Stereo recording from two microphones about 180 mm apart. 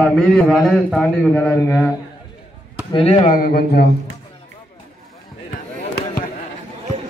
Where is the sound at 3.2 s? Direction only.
50° left (ahead or behind).